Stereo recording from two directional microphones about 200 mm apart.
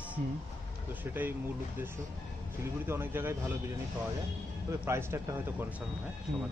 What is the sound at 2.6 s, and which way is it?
Speech, 10° right (ahead or behind).